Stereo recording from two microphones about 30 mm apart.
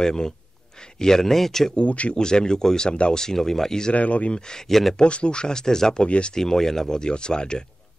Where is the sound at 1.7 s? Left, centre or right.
Left.